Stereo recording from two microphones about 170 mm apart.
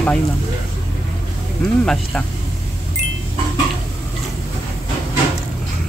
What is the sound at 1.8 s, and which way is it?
Speech, 5° left (ahead or behind).